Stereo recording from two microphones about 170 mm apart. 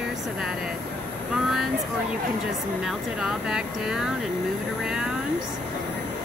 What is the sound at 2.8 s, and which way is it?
Speech, 5° right (ahead or behind).